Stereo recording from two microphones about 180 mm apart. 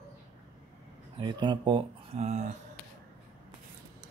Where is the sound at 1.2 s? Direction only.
25° right (ahead or behind).